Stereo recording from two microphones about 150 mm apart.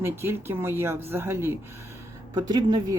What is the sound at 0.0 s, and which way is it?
Speech, 15° right (ahead or behind).